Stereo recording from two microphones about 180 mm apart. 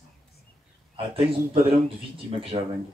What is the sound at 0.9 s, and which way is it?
Speech, 30° right (ahead or behind).